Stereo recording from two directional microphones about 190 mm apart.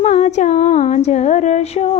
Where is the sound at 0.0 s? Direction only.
40° left (ahead or behind).